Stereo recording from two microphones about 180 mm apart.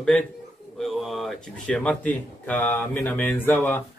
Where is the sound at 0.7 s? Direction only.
Centre (ahead or behind).